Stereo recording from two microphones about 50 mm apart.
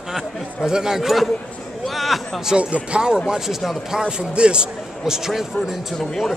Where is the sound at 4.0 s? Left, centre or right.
Centre.